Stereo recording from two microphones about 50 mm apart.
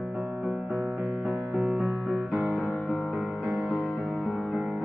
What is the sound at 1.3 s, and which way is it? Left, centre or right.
Music, centre.